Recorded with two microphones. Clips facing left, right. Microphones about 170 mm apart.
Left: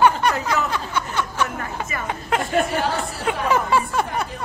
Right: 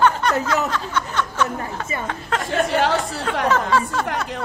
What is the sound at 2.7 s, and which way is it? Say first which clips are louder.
Chatter: right 4 dB; 80° right.